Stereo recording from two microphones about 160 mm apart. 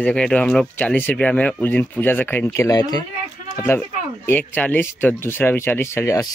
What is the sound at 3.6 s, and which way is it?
Speech, 10° left (ahead or behind).